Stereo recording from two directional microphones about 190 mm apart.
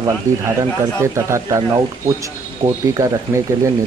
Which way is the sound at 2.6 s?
30° right (ahead or behind).